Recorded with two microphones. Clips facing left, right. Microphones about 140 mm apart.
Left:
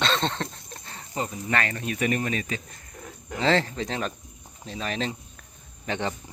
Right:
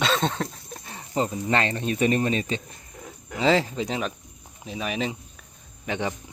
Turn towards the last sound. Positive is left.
turn(degrees=-15)  # may be behind; listen again after turning